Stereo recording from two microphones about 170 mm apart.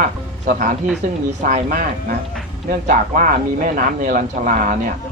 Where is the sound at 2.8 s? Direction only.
50° right (ahead or behind).